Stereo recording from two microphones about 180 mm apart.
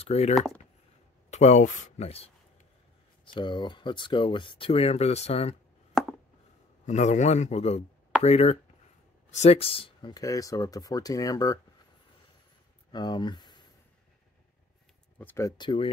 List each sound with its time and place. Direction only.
0.0 s speech: 35° left (ahead or behind)
1.3 s speech: 40° left (ahead or behind)
3.3 s speech: 25° left (ahead or behind)
5.9 s chopping: centre (ahead or behind)
6.9 s speech: 40° left (ahead or behind); by 11.6 s 20° left (ahead or behind)
12.9 s speech: 25° left (ahead or behind)
15.1 s speech: 15° left (ahead or behind)